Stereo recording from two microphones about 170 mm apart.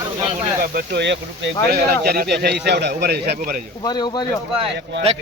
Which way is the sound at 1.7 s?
65° right (ahead or behind).